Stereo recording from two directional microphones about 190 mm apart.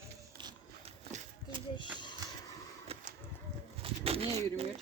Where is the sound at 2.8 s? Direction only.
30° right (ahead or behind).